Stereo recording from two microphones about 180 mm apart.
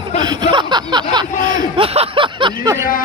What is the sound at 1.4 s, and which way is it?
Speech, 25° right (ahead or behind).